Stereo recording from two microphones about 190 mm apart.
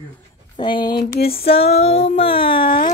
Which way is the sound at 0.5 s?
25° left (ahead or behind).